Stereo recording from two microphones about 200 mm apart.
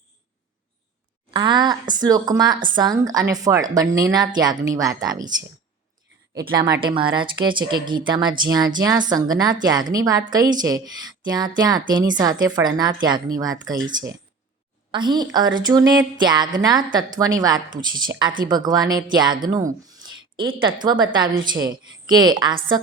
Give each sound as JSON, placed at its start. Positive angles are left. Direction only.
{"t": 1.3, "sound": "a woman's voice", "side_deg": -20}
{"t": 6.6, "sound": "a woman's voice", "side_deg": -20}
{"t": 14.9, "sound": "a woman's voice", "side_deg": -20}
{"t": 19.9, "sound": "a sound", "side_deg": -20}
{"t": 20.6, "sound": "a woman's voice", "side_deg": -25}